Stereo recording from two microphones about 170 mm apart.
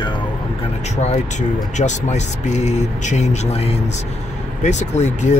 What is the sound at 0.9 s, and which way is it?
Speech, 40° left (ahead or behind).